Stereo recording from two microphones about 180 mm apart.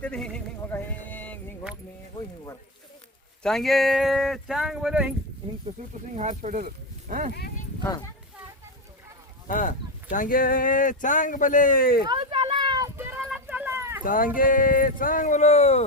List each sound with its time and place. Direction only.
0.0 s a sound: 5° left (ahead or behind)
3.4 s speech: centre (ahead or behind)
6.1 s speech: 40° right (ahead or behind)
7.9 s speech: 20° left (ahead or behind)
9.5 s speech: 45° left (ahead or behind)
12.0 s speech: 30° right (ahead or behind)
13.0 s a sound: 10° right (ahead or behind)
14.0 s speech: 50° left (ahead or behind)